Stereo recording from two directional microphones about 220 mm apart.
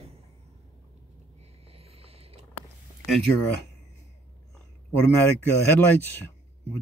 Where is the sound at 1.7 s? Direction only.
25° right (ahead or behind).